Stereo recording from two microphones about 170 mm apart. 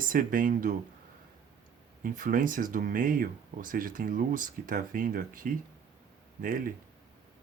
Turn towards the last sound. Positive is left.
turn(degrees=-55)  # may be behind; listen again after turning